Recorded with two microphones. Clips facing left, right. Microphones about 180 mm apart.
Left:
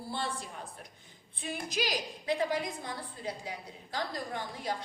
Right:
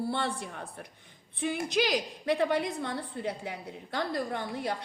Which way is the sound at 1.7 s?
65° right (ahead or behind).